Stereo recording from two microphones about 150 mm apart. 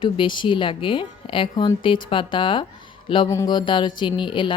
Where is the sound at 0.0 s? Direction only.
35° left (ahead or behind).